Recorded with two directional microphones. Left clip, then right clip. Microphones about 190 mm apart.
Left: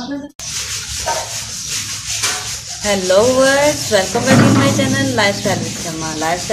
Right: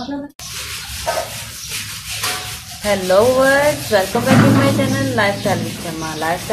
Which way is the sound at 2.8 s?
30° left (ahead or behind).